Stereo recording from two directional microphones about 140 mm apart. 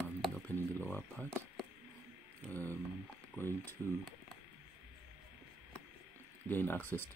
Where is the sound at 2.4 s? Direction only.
15° left (ahead or behind).